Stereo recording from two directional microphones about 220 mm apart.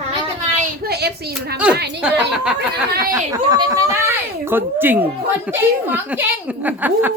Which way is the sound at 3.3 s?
20° right (ahead or behind).